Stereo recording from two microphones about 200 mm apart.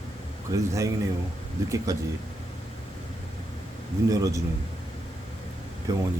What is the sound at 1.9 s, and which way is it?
Speech, 15° right (ahead or behind).